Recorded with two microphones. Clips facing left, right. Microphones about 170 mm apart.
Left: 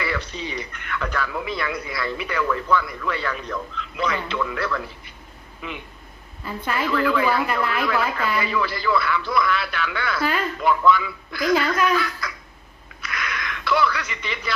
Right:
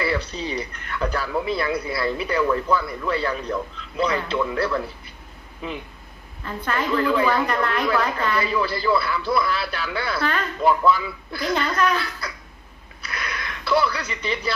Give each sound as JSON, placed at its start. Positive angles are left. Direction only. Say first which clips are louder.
{"t": 0.0, "sound": "a man's voice", "louder": "right 3 dB", "side_deg": -35}
{"t": 6.4, "sound": "speech", "louder": "even", "side_deg": 10}
{"t": 6.9, "sound": "speech", "louder": "right 1 dB", "side_deg": -30}
{"t": 7.2, "sound": "speech", "louder": "right 1 dB", "side_deg": 5}
{"t": 8.4, "sound": "speech", "louder": "right 1 dB", "side_deg": -30}
{"t": 11.5, "sound": "speech", "louder": "left 2 dB", "side_deg": 10}
{"t": 12.2, "sound": "a sound", "louder": "left 1 dB", "side_deg": -30}